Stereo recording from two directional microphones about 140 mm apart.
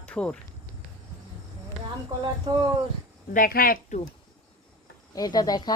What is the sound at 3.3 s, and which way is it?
Speech, 85° left.